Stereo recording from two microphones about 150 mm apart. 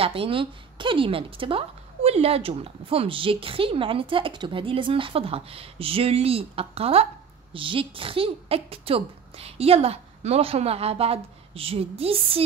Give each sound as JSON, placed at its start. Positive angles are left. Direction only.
{"t": 0.0, "sound": "speech", "side_deg": -40}